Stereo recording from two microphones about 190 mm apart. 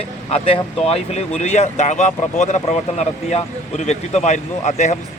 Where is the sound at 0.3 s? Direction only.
30° left (ahead or behind).